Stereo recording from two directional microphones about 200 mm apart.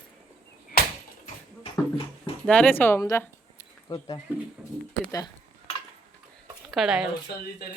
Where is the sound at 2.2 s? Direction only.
5° left (ahead or behind).